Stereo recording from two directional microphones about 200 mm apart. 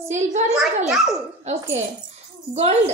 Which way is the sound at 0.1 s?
35° right (ahead or behind).